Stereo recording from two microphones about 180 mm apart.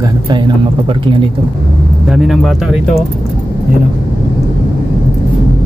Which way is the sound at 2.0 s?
5° right (ahead or behind).